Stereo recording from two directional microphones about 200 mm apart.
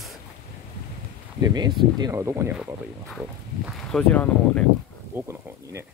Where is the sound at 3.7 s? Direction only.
Centre (ahead or behind).